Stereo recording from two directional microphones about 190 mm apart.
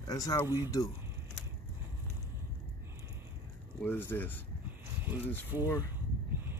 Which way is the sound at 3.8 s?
10° left (ahead or behind).